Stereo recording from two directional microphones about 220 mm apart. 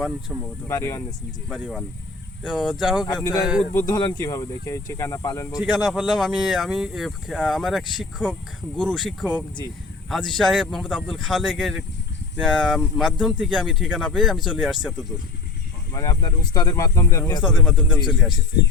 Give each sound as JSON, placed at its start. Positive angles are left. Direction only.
{"t": 0.3, "sound": "speech", "side_deg": -5}
{"t": 0.7, "sound": "speech", "side_deg": 10}
{"t": 1.5, "sound": "speech", "side_deg": 0}
{"t": 3.8, "sound": "speech", "side_deg": 15}
{"t": 5.7, "sound": "speech", "side_deg": 0}
{"t": 15.9, "sound": "speech", "side_deg": 15}
{"t": 17.4, "sound": "speech", "side_deg": 0}